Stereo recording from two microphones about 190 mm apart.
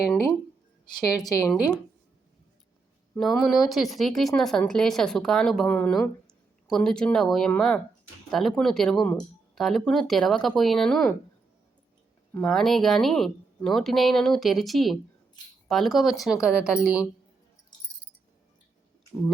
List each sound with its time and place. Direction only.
0.0 s a sound: centre (ahead or behind)
1.2 s speech: 20° left (ahead or behind)
3.2 s speech: centre (ahead or behind)
12.3 s speech: 5° left (ahead or behind)